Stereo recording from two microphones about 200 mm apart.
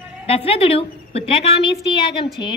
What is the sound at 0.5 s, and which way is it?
A woman's voice, 30° left (ahead or behind).